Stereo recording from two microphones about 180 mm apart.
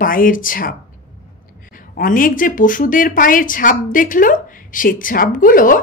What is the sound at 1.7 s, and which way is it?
A woman's voice, 50° left (ahead or behind).